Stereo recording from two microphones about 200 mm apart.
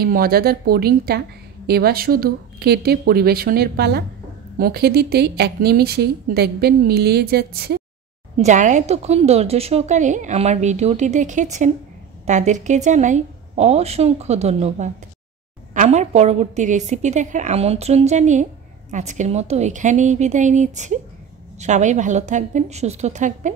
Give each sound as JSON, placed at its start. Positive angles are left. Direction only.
{"t": 0.0, "sound": "speech", "side_deg": -50}
{"t": 8.4, "sound": "a woman's voice", "side_deg": -40}